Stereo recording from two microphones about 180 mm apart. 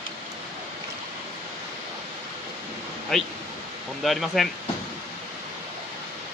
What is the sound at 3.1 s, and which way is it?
Speech, centre (ahead or behind).